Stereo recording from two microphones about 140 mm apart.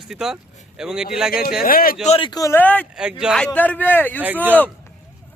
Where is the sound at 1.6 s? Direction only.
90° left.